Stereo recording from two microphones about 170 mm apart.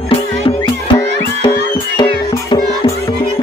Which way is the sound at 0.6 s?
25° left (ahead or behind).